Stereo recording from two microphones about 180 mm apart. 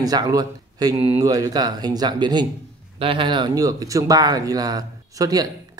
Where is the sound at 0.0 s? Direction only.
20° right (ahead or behind).